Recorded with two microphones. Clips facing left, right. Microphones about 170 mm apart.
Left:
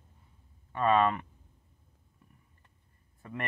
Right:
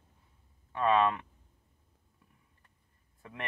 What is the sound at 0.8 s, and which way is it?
Speech, 45° left (ahead or behind).